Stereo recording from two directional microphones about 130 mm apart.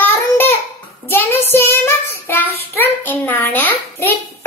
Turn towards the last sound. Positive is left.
turn(degrees=15)  # may be behind; listen again after turning